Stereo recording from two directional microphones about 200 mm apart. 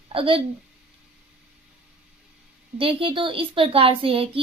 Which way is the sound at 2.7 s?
25° right (ahead or behind).